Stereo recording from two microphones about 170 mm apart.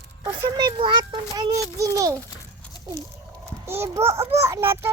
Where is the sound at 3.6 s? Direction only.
15° right (ahead or behind).